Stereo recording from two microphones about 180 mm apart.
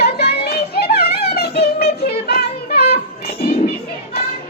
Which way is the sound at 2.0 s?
60° left (ahead or behind).